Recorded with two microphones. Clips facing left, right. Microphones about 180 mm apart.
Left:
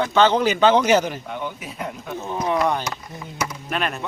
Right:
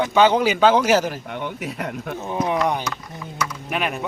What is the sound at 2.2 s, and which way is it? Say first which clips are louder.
Speech: even; 15° right (ahead or behind).